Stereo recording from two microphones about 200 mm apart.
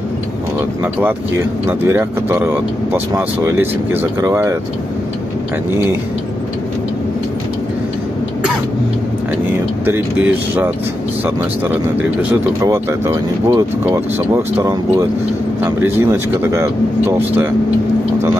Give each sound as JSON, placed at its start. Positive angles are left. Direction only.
{"t": 1.0, "sound": "speech", "side_deg": -10}
{"t": 5.7, "sound": "speech", "side_deg": -15}
{"t": 9.8, "sound": "speech", "side_deg": -10}